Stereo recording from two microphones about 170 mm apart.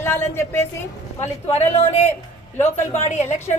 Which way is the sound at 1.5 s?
40° left (ahead or behind).